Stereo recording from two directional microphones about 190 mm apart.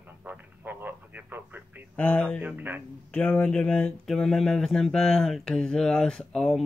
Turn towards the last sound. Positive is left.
turn(degrees=5)  # may be behind; listen again after turning